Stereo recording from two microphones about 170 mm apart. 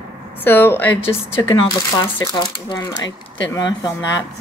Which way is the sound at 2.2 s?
25° left (ahead or behind).